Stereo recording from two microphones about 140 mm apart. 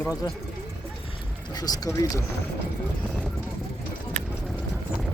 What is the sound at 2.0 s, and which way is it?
Speech, 25° left (ahead or behind).